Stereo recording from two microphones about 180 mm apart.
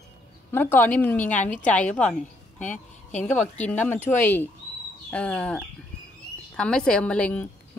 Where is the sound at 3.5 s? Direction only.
10° left (ahead or behind).